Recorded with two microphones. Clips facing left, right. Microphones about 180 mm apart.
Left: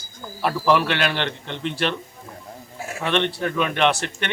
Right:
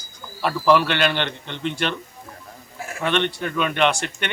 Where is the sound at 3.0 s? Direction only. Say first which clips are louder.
Even; centre (ahead or behind).